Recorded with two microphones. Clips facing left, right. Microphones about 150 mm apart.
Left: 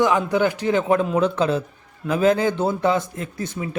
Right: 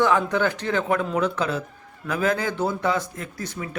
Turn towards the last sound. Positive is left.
turn(degrees=25)  # may be behind; listen again after turning